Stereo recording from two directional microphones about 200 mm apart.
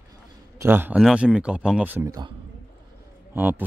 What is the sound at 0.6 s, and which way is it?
Speech, 10° right (ahead or behind).